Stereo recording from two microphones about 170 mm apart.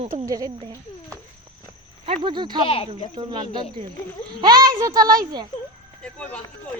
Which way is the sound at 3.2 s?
25° right (ahead or behind).